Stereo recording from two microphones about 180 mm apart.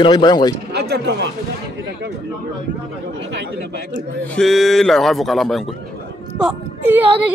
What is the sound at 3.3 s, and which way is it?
Speech, 75° right (ahead or behind).